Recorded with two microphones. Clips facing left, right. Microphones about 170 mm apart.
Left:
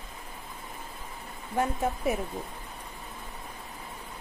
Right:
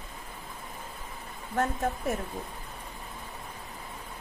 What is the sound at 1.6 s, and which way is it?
Speech, 10° left (ahead or behind).